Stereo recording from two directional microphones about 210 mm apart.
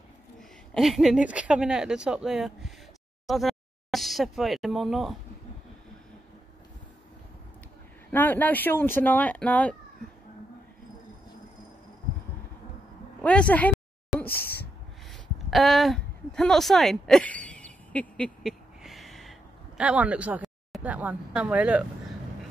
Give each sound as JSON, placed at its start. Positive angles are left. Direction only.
{"t": 0.7, "sound": "speech", "side_deg": 0}
{"t": 8.1, "sound": "speech", "side_deg": 10}
{"t": 13.2, "sound": "speech", "side_deg": 5}
{"t": 14.1, "sound": "a sound", "side_deg": 0}
{"t": 15.5, "sound": "a sound", "side_deg": 0}
{"t": 19.8, "sound": "speech", "side_deg": -5}